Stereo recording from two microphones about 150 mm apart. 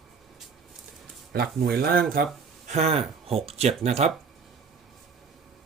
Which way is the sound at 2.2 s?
75° right (ahead or behind).